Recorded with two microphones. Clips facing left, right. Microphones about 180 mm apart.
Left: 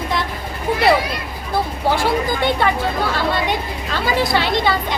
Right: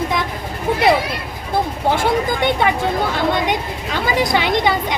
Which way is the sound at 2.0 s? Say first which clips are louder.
Right 1 dB; 20° right (ahead or behind).